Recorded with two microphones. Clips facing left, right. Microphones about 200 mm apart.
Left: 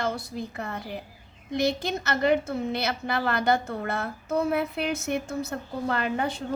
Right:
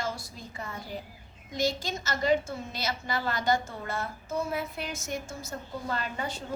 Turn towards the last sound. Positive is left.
turn(degrees=60)  # may be behind; listen again after turning